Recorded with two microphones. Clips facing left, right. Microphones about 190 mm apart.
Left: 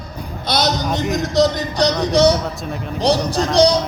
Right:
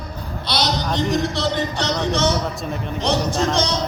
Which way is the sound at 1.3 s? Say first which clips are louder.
Left 6 dB; 40° left (ahead or behind).